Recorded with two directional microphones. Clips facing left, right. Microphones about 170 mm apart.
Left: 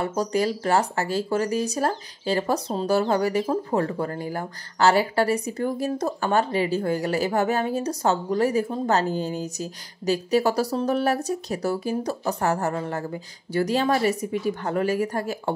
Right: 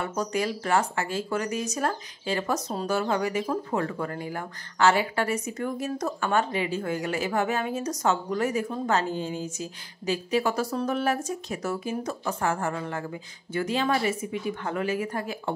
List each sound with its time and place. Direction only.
0.0 s speech: 35° left (ahead or behind)